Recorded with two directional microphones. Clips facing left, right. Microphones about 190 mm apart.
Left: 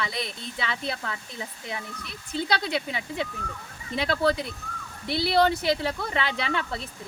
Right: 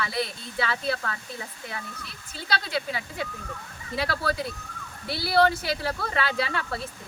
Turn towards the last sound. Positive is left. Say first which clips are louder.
# even
turn(degrees=20)  # may be behind; listen again after turning